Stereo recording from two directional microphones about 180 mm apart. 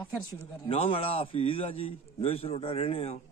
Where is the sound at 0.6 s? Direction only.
30° left (ahead or behind).